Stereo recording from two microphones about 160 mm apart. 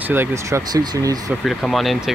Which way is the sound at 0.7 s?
25° right (ahead or behind).